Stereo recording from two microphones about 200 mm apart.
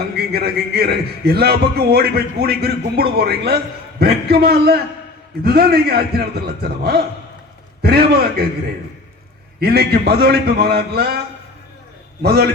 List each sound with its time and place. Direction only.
0.2 s a man's voice: 50° right (ahead or behind)
9.6 s a man's voice: 50° right (ahead or behind)
12.2 s a man's voice: 50° right (ahead or behind)